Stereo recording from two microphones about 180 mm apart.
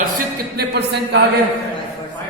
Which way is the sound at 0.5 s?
65° right (ahead or behind).